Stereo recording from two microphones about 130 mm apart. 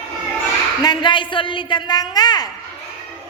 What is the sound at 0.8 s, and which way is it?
A woman's voice, 35° left (ahead or behind).